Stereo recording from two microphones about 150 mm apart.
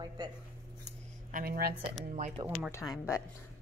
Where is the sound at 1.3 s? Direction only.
70° right (ahead or behind).